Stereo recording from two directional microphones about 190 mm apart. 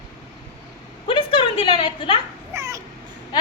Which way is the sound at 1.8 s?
25° left (ahead or behind).